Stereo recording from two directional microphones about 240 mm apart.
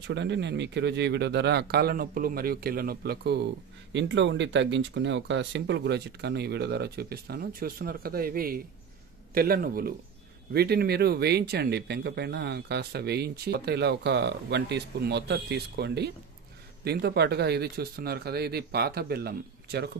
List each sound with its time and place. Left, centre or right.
0.0 s speech: right